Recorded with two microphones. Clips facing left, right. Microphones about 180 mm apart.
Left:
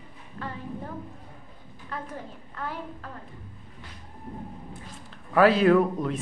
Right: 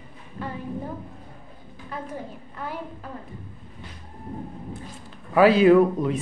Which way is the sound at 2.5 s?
15° right (ahead or behind).